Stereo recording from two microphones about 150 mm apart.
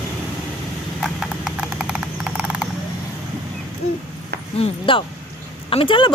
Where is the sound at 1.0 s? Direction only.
5° right (ahead or behind).